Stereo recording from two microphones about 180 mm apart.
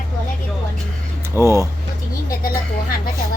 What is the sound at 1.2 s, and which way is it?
Speech, 15° right (ahead or behind).